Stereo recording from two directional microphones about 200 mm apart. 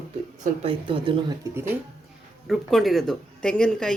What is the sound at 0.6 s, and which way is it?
Speech, 25° right (ahead or behind).